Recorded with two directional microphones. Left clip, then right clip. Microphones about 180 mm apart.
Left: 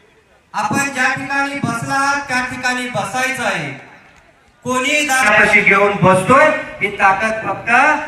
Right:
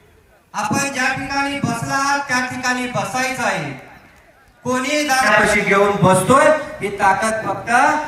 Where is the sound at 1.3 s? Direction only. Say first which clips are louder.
Left 2 dB; 40° left (ahead or behind).